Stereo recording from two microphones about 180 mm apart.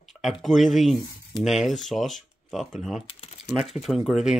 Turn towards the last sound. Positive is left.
turn(degrees=0)  # may be behind; listen again after turning